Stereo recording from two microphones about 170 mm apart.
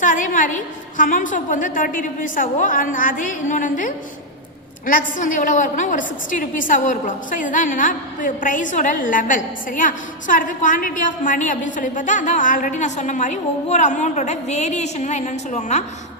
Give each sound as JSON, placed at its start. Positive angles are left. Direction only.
{"t": 0.0, "sound": "a woman's voice", "side_deg": 50}